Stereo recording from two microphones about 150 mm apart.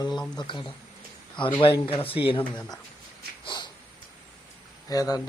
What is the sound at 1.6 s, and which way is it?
Speech, 35° left (ahead or behind).